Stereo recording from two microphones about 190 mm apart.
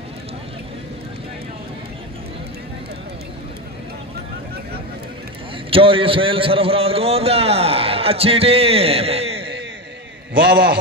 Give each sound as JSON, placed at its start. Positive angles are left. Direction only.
{"t": 5.7, "sound": "a man's voice", "side_deg": -30}
{"t": 10.5, "sound": "a man's voice", "side_deg": -55}